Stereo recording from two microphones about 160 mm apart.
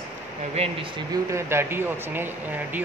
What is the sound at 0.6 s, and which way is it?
Speech, 30° right (ahead or behind).